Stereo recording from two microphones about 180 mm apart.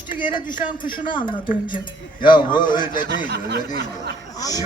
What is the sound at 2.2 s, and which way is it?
Speech, 25° left (ahead or behind).